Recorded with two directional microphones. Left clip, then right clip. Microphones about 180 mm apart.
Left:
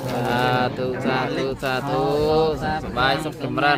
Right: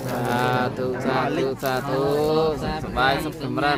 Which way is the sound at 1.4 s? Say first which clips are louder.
Even; 5° right (ahead or behind).